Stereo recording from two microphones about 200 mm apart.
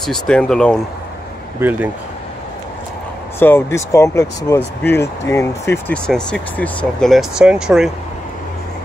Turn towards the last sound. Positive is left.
turn(degrees=-5)  # may be behind; listen again after turning